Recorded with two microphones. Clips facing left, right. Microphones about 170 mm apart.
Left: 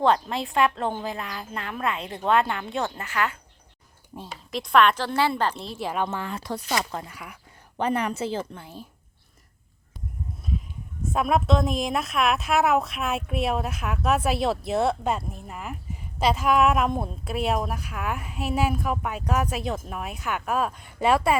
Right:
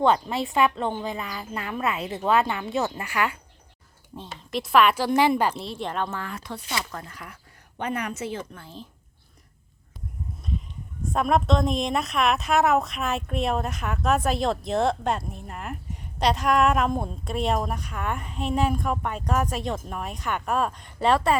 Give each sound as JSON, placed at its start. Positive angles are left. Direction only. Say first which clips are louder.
{"t": 0.0, "sound": "a woman's voice", "louder": "even", "side_deg": 0}
{"t": 5.5, "sound": "a woman's voice", "louder": "left 1 dB", "side_deg": 5}
{"t": 6.1, "sound": "speech", "louder": "left 2 dB", "side_deg": 20}
{"t": 6.4, "sound": "speech", "louder": "left 4 dB", "side_deg": 40}
{"t": 7.0, "sound": "speech", "louder": "left 1 dB", "side_deg": 10}
{"t": 7.8, "sound": "speech", "louder": "left 4 dB", "side_deg": 30}
{"t": 8.6, "sound": "speech", "louder": "even", "side_deg": 10}
{"t": 10.5, "sound": "a sound", "louder": "left 1 dB", "side_deg": 5}
{"t": 11.0, "sound": "a woman's voice", "louder": "right 1 dB", "side_deg": 5}